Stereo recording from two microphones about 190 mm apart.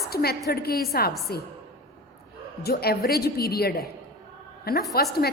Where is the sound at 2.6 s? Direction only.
55° left (ahead or behind).